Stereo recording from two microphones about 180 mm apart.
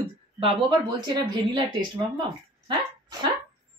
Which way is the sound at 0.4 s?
25° right (ahead or behind).